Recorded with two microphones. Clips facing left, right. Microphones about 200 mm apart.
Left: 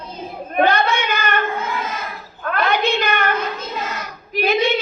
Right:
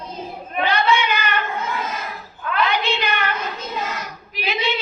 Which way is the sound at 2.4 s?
50° left (ahead or behind).